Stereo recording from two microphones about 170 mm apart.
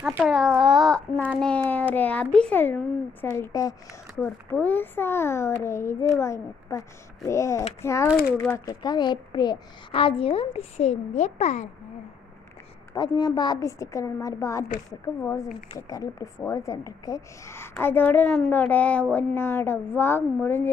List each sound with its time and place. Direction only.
0.0 s a child's voice: 5° right (ahead or behind)
1.4 s a sound: 10° left (ahead or behind)
2.0 s a woman's voice: 10° left (ahead or behind); by 11.7 s 40° left (ahead or behind)
12.9 s a woman's voice: 25° left (ahead or behind)
15.7 s a woman's voice: 20° left (ahead or behind)